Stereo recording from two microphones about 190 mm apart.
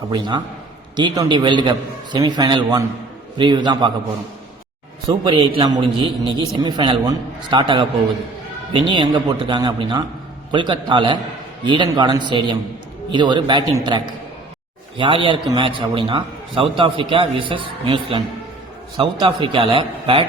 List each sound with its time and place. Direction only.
0.1 s a man's voice: 25° right (ahead or behind)
5.0 s a man's voice: 25° right (ahead or behind)